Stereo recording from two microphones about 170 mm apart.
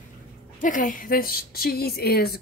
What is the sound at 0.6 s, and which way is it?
A woman's voice, 50° left (ahead or behind).